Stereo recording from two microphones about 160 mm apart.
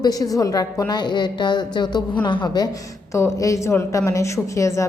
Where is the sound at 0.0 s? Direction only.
25° left (ahead or behind).